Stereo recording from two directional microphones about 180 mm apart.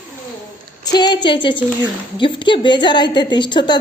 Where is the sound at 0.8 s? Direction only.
20° left (ahead or behind).